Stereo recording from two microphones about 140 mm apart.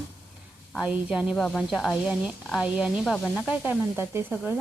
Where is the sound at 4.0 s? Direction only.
15° right (ahead or behind).